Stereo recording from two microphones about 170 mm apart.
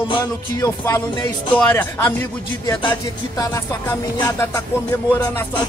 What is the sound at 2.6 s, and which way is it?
Music, 25° left (ahead or behind).